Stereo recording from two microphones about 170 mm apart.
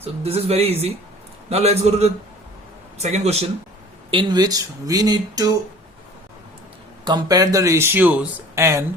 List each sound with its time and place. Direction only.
0.0 s speech: 35° right (ahead or behind)
4.1 s speech: 25° right (ahead or behind)
7.0 s speech: 25° right (ahead or behind)